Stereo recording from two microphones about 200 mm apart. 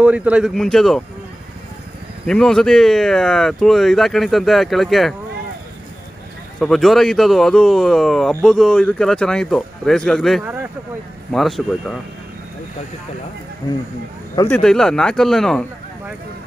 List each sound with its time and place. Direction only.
0.0 s speech: 5° right (ahead or behind)
2.2 s speech: 5° left (ahead or behind)
6.6 s speech: centre (ahead or behind)
14.3 s speech: 15° left (ahead or behind)
14.6 s speech: 5° left (ahead or behind)